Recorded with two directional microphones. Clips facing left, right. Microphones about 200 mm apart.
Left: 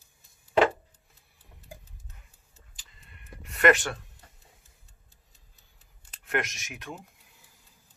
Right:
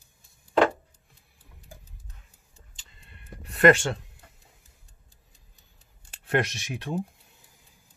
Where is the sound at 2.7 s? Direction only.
30° right (ahead or behind).